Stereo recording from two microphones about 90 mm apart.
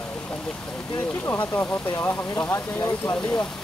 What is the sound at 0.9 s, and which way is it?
Speech, 30° left (ahead or behind).